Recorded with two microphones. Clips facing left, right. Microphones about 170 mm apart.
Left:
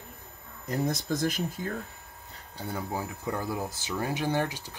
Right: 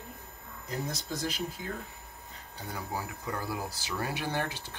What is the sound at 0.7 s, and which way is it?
Speech, 50° left (ahead or behind).